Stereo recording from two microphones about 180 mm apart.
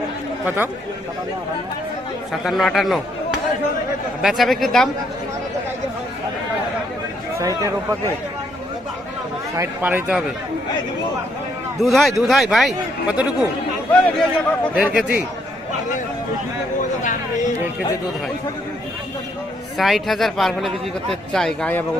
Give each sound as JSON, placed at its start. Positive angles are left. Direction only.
{"t": 0.4, "sound": "speech", "side_deg": -10}
{"t": 2.4, "sound": "speech", "side_deg": 0}
{"t": 4.2, "sound": "speech", "side_deg": 0}
{"t": 7.3, "sound": "speech", "side_deg": -20}
{"t": 9.6, "sound": "speech", "side_deg": -10}
{"t": 11.8, "sound": "speech", "side_deg": 0}
{"t": 13.9, "sound": "a man's voice", "side_deg": 5}
{"t": 14.8, "sound": "speech", "side_deg": -5}
{"t": 19.7, "sound": "speech", "side_deg": 0}